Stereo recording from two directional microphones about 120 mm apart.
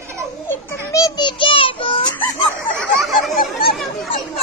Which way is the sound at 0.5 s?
25° left (ahead or behind).